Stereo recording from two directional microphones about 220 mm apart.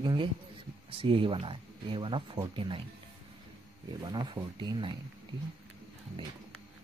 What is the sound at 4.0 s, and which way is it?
Speech, 20° right (ahead or behind).